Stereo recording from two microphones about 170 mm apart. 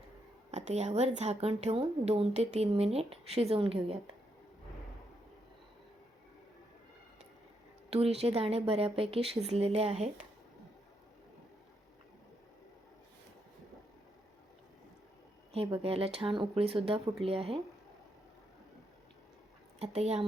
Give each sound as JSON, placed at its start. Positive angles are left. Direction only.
{"t": 0.5, "sound": "a woman's voice", "side_deg": -40}
{"t": 7.9, "sound": "a woman's voice", "side_deg": -35}
{"t": 15.5, "sound": "a woman's voice", "side_deg": -35}
{"t": 19.8, "sound": "a woman's voice", "side_deg": -40}